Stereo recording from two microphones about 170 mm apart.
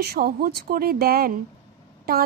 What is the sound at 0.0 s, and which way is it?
Speech, 65° right (ahead or behind).